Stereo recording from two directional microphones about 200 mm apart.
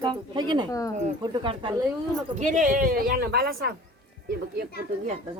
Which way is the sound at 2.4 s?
40° right (ahead or behind).